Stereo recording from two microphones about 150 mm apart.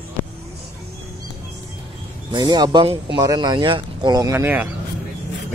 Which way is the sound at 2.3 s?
25° right (ahead or behind).